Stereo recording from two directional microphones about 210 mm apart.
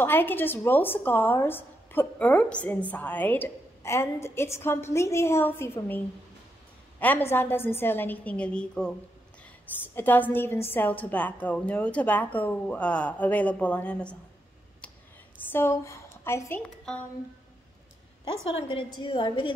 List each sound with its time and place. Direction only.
0.0 s speech: 10° left (ahead or behind)
9.9 s speech: 10° left (ahead or behind)
15.5 s a woman's voice: 10° left (ahead or behind)
18.6 s a woman's voice: 25° left (ahead or behind)